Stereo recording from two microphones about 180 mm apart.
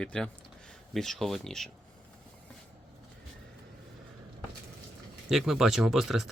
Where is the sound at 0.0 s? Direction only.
5° left (ahead or behind).